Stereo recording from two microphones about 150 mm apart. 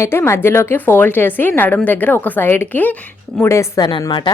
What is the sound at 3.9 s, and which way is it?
Speech, 30° left (ahead or behind).